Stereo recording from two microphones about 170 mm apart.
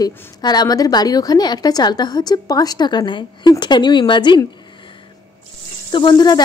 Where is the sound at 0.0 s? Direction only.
25° left (ahead or behind).